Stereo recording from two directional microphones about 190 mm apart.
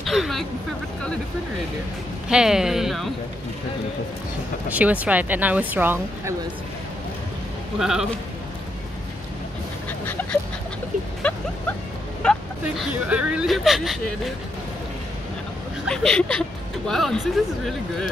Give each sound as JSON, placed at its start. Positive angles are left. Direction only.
{"t": 0.0, "sound": "speech", "side_deg": 0}
{"t": 2.2, "sound": "speech", "side_deg": -5}
{"t": 4.6, "sound": "speech", "side_deg": -10}
{"t": 7.8, "sound": "speech", "side_deg": -5}
{"t": 11.2, "sound": "a sound", "side_deg": 5}
{"t": 12.2, "sound": "vehicle", "side_deg": 5}
{"t": 13.1, "sound": "speech", "side_deg": -5}
{"t": 15.9, "sound": "speech", "side_deg": 5}